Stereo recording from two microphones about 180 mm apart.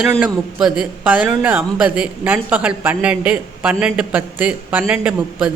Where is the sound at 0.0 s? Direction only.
5° right (ahead or behind).